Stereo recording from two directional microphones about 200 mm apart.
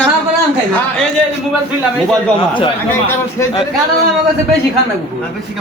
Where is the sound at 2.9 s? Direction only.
10° left (ahead or behind).